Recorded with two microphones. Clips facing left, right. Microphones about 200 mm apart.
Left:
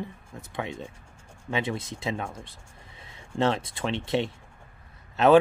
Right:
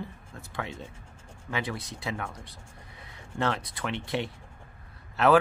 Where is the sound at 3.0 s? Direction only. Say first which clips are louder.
Even; 25° left (ahead or behind).